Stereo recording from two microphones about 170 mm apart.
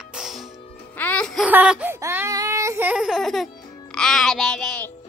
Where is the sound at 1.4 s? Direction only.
5° right (ahead or behind).